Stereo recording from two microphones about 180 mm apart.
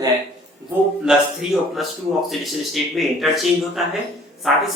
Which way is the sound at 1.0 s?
Centre (ahead or behind).